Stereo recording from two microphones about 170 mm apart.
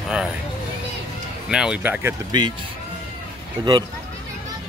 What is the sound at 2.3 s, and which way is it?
Speech, 25° right (ahead or behind).